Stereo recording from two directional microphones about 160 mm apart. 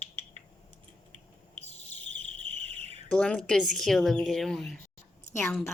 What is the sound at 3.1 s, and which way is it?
A woman's voice, 5° left (ahead or behind).